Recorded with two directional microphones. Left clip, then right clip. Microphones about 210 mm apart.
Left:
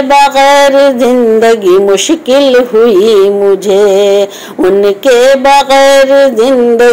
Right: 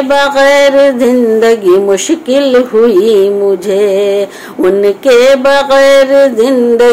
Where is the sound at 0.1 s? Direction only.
5° left (ahead or behind).